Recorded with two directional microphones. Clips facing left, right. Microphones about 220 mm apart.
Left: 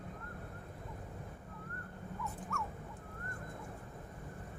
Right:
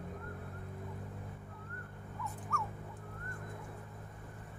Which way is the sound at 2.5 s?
Centre (ahead or behind).